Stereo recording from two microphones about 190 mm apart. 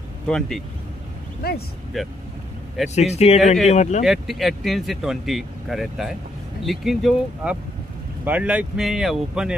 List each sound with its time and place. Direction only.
0.3 s speech: centre (ahead or behind)
2.0 s speech: centre (ahead or behind)
2.9 s speech: 35° left (ahead or behind)
4.0 s speech: centre (ahead or behind)